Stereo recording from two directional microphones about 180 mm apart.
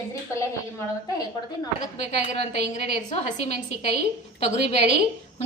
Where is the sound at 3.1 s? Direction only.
40° left (ahead or behind).